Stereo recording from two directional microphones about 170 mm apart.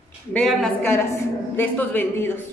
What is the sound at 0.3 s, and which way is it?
A woman's voice, 5° left (ahead or behind).